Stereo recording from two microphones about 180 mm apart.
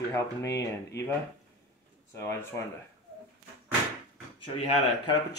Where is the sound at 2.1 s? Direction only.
15° left (ahead or behind).